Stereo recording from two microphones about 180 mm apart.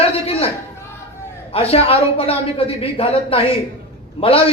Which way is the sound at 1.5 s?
35° left (ahead or behind).